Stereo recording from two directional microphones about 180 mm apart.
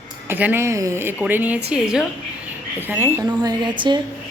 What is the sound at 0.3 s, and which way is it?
A woman's voice, 10° right (ahead or behind).